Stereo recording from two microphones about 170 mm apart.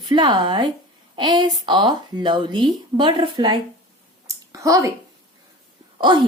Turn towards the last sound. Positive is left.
turn(degrees=-30)  # may be behind; listen again after turning